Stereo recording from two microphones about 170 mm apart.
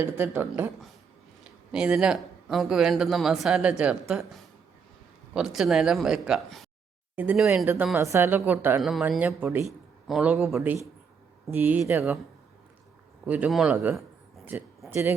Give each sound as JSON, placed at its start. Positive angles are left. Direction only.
{"t": 0.0, "sound": "speech", "side_deg": -10}
{"t": 1.7, "sound": "speech", "side_deg": -5}
{"t": 8.8, "sound": "speech", "side_deg": 0}
{"t": 13.2, "sound": "speech", "side_deg": -10}